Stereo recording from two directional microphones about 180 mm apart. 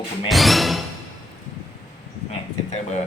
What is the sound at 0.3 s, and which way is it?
Music, centre (ahead or behind).